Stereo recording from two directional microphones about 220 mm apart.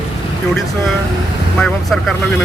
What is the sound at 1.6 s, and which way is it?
Speech, centre (ahead or behind).